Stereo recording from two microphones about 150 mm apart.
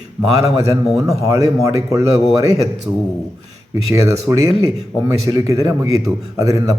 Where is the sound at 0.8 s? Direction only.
Centre (ahead or behind).